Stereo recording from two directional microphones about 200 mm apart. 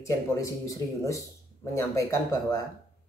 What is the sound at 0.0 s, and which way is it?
Speech, 15° left (ahead or behind).